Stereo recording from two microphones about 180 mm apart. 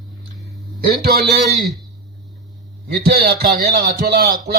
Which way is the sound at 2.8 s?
60° right (ahead or behind).